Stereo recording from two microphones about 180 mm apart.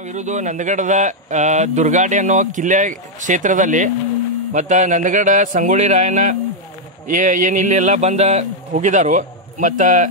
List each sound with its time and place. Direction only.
0.0 s speech: 40° right (ahead or behind)